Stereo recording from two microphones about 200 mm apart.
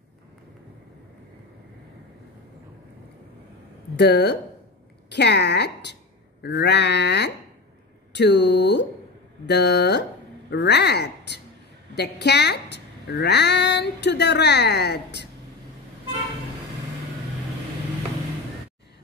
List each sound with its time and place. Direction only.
3.9 s a woman's voice: 60° left (ahead or behind)